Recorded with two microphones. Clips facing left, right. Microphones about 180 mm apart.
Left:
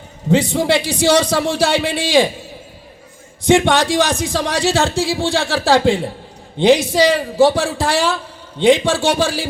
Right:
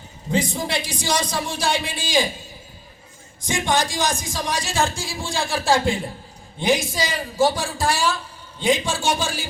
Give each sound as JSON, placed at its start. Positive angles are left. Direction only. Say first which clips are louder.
{"t": 0.5, "sound": "speech", "louder": "left 10 dB", "side_deg": 70}
{"t": 3.4, "sound": "a man's voice", "louder": "left 9 dB", "side_deg": 70}